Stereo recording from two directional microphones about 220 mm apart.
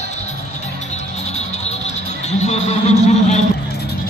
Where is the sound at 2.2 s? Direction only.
30° left (ahead or behind).